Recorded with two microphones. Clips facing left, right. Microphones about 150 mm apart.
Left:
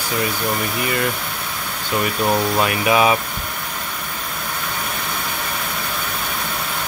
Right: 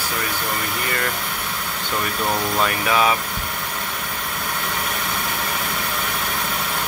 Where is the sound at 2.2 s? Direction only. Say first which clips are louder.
Left 3 dB; 15° left (ahead or behind).